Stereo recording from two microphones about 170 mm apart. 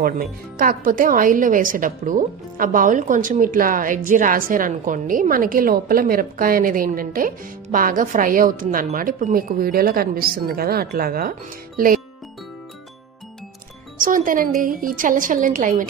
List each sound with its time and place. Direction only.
0.0 s a woman's voice: 55° right (ahead or behind)
13.9 s speech: 55° right (ahead or behind)